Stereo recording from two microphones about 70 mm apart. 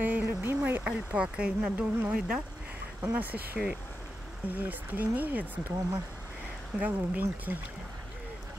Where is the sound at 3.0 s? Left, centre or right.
Right.